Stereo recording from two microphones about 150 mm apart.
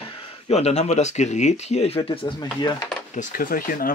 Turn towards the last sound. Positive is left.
turn(degrees=75)  # may be behind; listen again after turning